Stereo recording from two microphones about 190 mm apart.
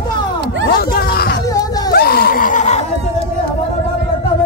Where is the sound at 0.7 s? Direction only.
55° left (ahead or behind).